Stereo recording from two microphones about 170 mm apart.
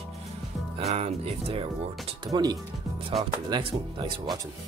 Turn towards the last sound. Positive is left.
turn(degrees=-30)  # may be behind; listen again after turning